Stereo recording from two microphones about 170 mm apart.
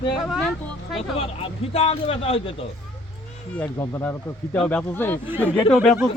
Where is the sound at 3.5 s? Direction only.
10° left (ahead or behind).